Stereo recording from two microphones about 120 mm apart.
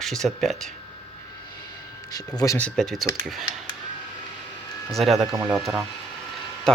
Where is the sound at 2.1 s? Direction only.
30° left (ahead or behind).